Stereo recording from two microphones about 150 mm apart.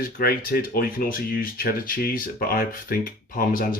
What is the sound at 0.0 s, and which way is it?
Speech, 85° left.